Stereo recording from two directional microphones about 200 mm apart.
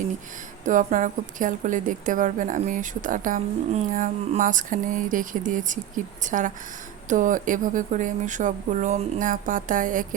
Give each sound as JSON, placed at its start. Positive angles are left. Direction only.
{"t": 0.6, "sound": "a woman's voice", "side_deg": -40}